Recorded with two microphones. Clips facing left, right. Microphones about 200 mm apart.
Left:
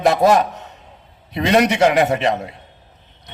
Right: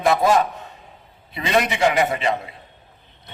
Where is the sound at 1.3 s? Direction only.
70° left (ahead or behind).